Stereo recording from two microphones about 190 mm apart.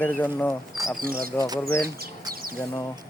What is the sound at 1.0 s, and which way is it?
Speech, 50° right (ahead or behind).